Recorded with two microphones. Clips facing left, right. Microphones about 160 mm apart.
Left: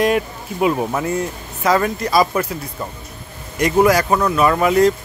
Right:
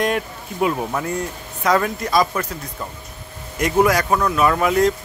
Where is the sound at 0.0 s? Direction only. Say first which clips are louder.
Left 4 dB; 5° left (ahead or behind).